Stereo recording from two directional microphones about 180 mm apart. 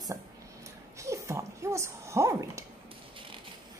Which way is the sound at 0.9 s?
15° right (ahead or behind).